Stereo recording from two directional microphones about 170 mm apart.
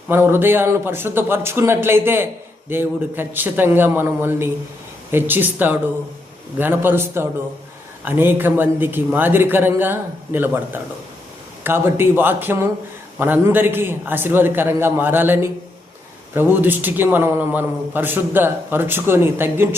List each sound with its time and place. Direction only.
0.1 s a man's voice: 15° right (ahead or behind)